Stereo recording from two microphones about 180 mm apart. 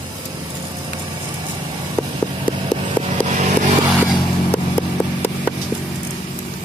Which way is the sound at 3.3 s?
40° right (ahead or behind).